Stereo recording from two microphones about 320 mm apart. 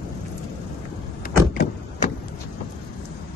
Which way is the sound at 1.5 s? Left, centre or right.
Left.